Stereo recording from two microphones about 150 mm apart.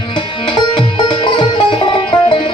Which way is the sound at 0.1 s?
35° left (ahead or behind).